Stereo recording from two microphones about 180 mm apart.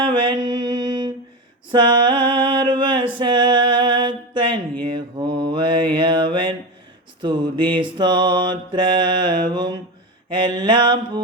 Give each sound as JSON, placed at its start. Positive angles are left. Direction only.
{"t": 0.4, "sound": "mantra", "side_deg": -25}
{"t": 2.5, "sound": "a sound", "side_deg": -25}
{"t": 3.2, "sound": "music", "side_deg": -25}
{"t": 4.9, "sound": "mantra", "side_deg": -25}